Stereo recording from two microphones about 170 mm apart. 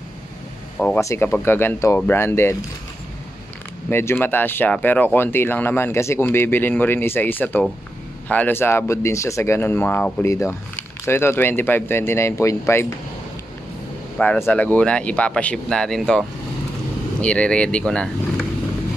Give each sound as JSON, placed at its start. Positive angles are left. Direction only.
{"t": 0.7, "sound": "speech", "side_deg": 5}
{"t": 3.9, "sound": "speech", "side_deg": 15}
{"t": 14.1, "sound": "speech", "side_deg": 10}